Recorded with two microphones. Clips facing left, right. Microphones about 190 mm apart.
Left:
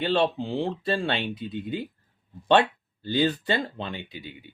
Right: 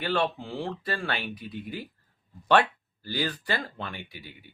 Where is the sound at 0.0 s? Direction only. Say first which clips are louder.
Left 4 dB; 25° left (ahead or behind).